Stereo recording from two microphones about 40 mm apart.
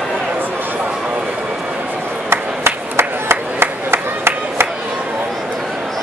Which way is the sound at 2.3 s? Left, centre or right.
Right.